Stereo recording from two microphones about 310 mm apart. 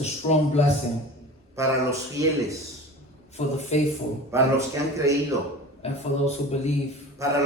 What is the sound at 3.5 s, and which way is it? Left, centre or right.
Speech, left.